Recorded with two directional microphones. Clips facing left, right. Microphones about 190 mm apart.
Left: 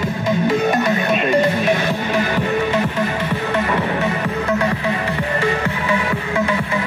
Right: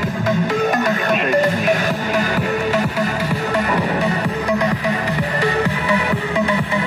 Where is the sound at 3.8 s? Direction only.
35° right (ahead or behind).